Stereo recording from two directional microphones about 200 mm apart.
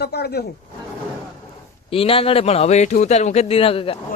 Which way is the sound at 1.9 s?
30° left (ahead or behind).